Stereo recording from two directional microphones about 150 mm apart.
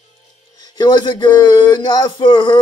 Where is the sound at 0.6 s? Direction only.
25° left (ahead or behind).